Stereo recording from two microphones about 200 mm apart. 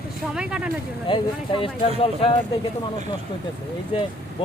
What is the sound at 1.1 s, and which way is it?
Speech, 25° left (ahead or behind).